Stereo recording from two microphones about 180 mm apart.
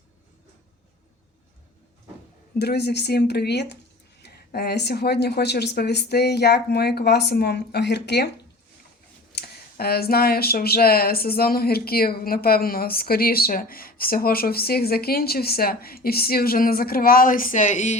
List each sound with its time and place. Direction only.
2.6 s speech: 65° left (ahead or behind)
9.3 s speech: 60° left (ahead or behind); by 17.9 s 40° left (ahead or behind)